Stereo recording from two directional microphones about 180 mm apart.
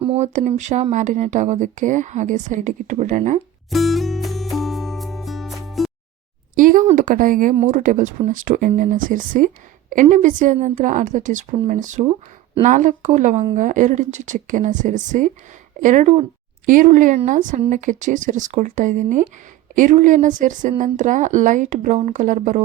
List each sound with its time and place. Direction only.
0.0 s speech: 35° right (ahead or behind)
3.7 s music: centre (ahead or behind)
6.6 s speech: 45° right (ahead or behind)